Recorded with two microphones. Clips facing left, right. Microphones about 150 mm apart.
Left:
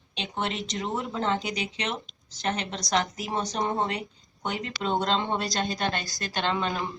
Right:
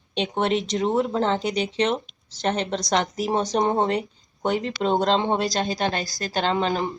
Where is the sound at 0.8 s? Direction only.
20° right (ahead or behind).